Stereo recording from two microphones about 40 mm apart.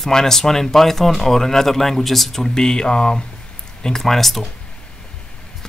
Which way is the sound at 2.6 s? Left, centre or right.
Centre.